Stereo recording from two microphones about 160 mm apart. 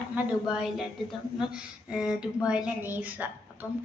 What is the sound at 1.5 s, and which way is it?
Speech, 5° right (ahead or behind).